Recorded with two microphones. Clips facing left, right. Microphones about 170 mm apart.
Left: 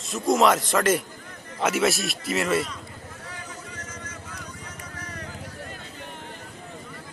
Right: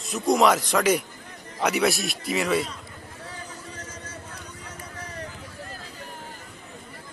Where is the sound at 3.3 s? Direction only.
30° right (ahead or behind).